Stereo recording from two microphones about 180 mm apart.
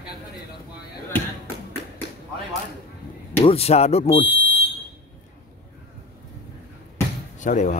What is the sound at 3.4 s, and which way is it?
Speech, 35° left (ahead or behind).